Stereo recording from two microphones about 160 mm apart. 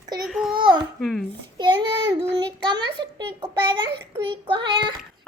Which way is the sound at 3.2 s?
30° right (ahead or behind).